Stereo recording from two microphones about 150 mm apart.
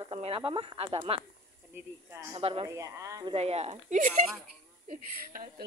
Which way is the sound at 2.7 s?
20° right (ahead or behind).